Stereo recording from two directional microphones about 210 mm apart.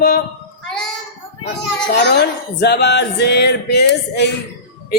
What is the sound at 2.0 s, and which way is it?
Speech, 50° left (ahead or behind).